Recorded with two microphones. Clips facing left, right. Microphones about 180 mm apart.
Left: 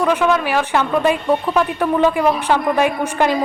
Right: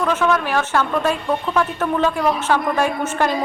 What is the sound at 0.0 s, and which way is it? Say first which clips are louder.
A woman's voice: left 3 dB; 10° left (ahead or behind).